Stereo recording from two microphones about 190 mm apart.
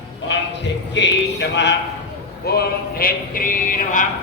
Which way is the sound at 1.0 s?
70° left (ahead or behind).